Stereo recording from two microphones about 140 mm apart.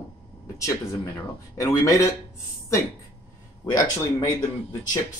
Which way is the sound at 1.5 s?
20° left (ahead or behind).